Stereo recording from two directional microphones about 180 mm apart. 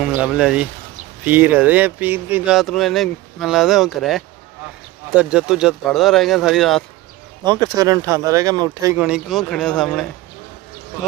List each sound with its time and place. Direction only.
0.2 s speech: 5° right (ahead or behind)
7.4 s speech: 20° right (ahead or behind)
8.9 s speech: 5° right (ahead or behind)